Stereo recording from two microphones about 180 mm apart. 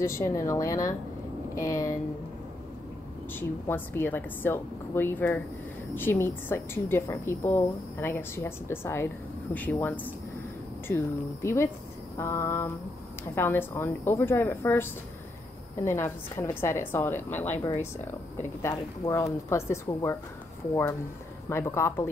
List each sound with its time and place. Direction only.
0.0 s a woman's voice: 15° left (ahead or behind)
3.3 s a woman's voice: 10° left (ahead or behind)
21.5 s a woman's voice: 15° left (ahead or behind)